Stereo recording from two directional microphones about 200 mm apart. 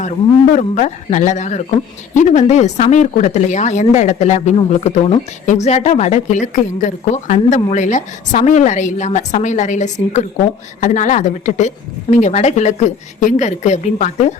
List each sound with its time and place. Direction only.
0.5 s speech: 35° left (ahead or behind)